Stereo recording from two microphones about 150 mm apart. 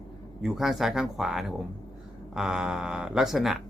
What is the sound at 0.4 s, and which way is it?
A man's voice, centre (ahead or behind).